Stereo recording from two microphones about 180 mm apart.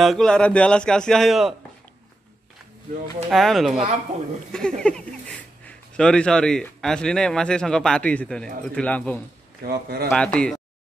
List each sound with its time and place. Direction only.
0.0 s speech: centre (ahead or behind)
3.3 s speech: centre (ahead or behind)
9.7 s speech: 60° right (ahead or behind)
10.0 s speech: 5° left (ahead or behind)